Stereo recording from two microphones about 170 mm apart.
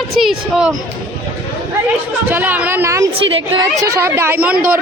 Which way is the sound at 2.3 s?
10° right (ahead or behind).